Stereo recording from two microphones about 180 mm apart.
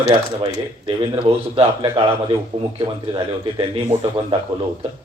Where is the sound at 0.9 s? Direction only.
30° right (ahead or behind).